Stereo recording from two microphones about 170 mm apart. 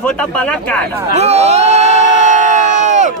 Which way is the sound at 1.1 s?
40° right (ahead or behind).